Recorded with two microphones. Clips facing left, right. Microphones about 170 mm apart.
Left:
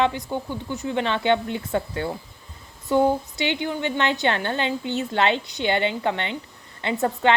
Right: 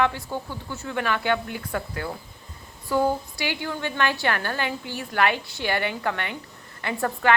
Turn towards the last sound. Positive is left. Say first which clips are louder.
# left 3 dB
turn(degrees=20)  # may be behind; listen again after turning